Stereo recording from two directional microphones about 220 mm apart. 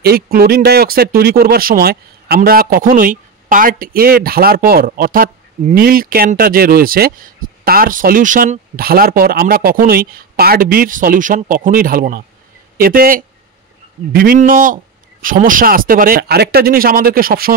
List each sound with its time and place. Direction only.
0.0 s speech: 45° right (ahead or behind)